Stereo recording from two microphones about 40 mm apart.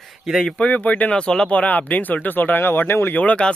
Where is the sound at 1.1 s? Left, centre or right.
Left.